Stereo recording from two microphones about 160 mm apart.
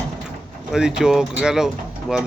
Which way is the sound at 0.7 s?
5° right (ahead or behind).